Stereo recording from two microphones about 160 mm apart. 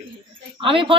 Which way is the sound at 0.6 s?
35° right (ahead or behind).